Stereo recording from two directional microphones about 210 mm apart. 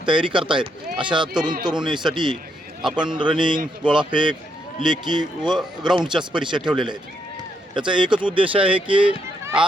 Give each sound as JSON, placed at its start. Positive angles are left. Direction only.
{"t": 0.0, "sound": "speech", "side_deg": -25}